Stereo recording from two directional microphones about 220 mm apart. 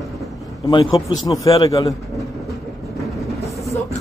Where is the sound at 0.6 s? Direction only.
20° left (ahead or behind).